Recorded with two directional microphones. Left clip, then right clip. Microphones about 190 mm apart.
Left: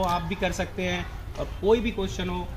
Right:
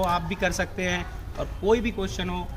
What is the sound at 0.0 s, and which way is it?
Speech, 5° left (ahead or behind).